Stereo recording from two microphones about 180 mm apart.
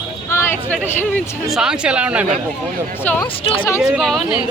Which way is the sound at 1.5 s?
5° right (ahead or behind).